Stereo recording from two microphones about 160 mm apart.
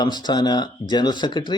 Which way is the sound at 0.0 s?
25° left (ahead or behind).